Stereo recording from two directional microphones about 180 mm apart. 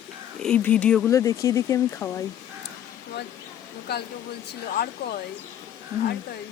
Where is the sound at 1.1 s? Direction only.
15° left (ahead or behind).